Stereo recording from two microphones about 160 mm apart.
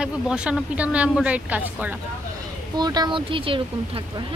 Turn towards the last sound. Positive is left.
turn(degrees=-35)  # may be behind; listen again after turning